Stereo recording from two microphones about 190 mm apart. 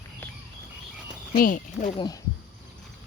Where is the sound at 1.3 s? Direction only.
45° left (ahead or behind).